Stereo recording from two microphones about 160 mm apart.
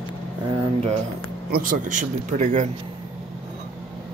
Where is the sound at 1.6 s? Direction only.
55° right (ahead or behind).